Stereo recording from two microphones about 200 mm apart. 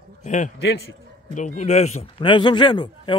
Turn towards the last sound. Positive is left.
turn(degrees=20)  # may be behind; listen again after turning